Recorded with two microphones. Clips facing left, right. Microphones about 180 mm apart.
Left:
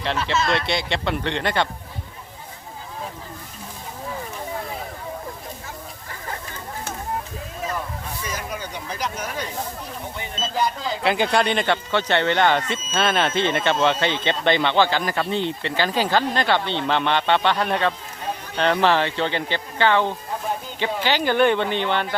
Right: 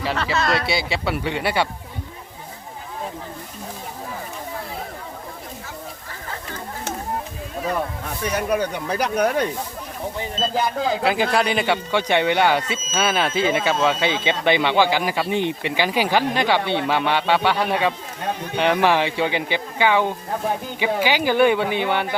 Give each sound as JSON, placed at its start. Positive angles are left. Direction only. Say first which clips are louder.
{"t": 0.5, "sound": "speech", "louder": "right 1 dB", "side_deg": -5}
{"t": 8.2, "sound": "speech", "louder": "right 12 dB", "side_deg": -65}
{"t": 10.2, "sound": "speech", "louder": "right 6 dB", "side_deg": -40}
{"t": 10.5, "sound": "speech", "louder": "right 2 dB", "side_deg": -55}
{"t": 11.0, "sound": "speech", "louder": "left 2 dB", "side_deg": 0}